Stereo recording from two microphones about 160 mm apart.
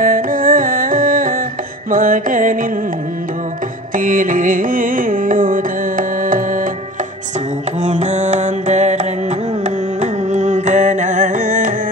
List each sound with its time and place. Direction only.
0.0 s carnatic music: 60° right (ahead or behind)
1.9 s music: 60° right (ahead or behind)
3.9 s carnatic music: 55° right (ahead or behind)
7.8 s mantra: 45° right (ahead or behind)
9.9 s carnatic music: 45° right (ahead or behind)